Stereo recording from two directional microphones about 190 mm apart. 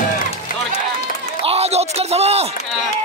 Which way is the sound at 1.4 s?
30° right (ahead or behind).